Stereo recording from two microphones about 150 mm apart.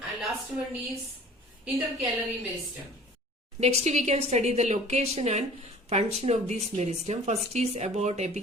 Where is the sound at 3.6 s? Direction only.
45° right (ahead or behind).